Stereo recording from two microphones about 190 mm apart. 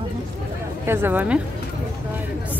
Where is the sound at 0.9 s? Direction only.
10° right (ahead or behind).